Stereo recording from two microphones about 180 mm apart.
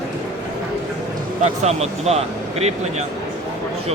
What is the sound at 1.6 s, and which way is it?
Speech, 35° right (ahead or behind).